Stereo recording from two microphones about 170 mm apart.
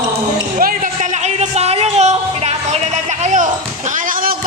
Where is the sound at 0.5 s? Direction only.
50° right (ahead or behind).